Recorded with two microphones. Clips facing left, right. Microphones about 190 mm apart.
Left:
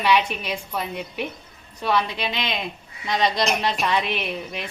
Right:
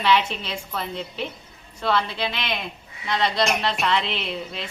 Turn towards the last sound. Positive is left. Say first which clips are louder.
# left 1 dB
turn(degrees=15)  # may be behind; listen again after turning